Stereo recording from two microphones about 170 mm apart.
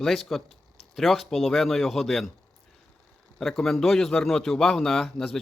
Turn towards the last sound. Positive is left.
turn(degrees=0)  # may be behind; listen again after turning